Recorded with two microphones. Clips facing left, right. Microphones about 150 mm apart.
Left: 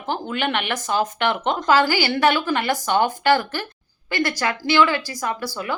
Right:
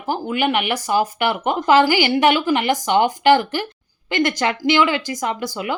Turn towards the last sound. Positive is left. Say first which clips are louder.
# right 2 dB
turn(degrees=-20)  # may be behind; listen again after turning